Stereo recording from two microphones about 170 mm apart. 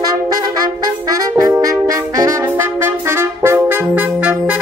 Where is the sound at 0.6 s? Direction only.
20° right (ahead or behind).